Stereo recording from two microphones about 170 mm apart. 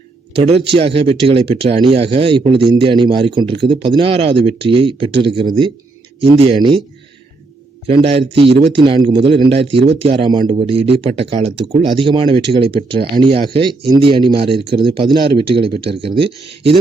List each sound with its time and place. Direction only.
0.3 s speech: 35° right (ahead or behind)
7.9 s speech: 35° right (ahead or behind)